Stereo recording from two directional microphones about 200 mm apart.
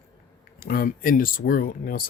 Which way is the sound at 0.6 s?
45° left (ahead or behind).